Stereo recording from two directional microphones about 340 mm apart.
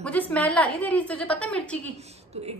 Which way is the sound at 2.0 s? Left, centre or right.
Centre.